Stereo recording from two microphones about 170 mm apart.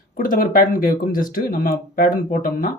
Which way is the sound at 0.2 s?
55° left (ahead or behind).